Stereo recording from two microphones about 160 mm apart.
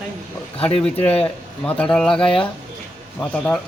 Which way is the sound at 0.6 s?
5° left (ahead or behind).